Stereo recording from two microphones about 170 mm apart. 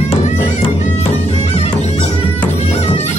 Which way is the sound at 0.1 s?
40° left (ahead or behind).